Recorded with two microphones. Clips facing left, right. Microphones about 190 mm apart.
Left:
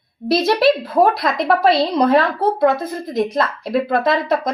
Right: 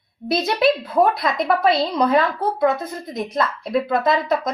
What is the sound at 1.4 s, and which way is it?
A woman's voice, 30° left (ahead or behind).